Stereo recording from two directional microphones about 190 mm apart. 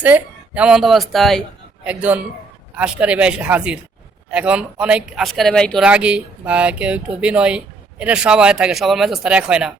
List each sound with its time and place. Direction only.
0.0 s speech: 5° right (ahead or behind)